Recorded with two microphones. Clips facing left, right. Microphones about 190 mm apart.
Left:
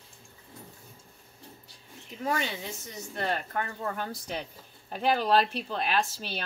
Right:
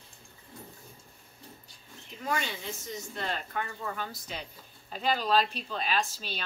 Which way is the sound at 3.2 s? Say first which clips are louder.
Left 5 dB; 55° left (ahead or behind).